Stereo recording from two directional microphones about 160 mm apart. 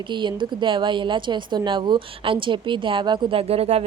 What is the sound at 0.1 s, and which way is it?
A woman's voice, 30° right (ahead or behind).